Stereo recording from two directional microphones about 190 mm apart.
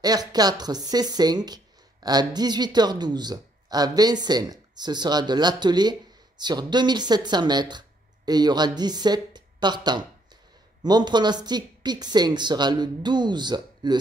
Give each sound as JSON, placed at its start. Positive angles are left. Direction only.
{"t": 0.0, "sound": "speech", "side_deg": -20}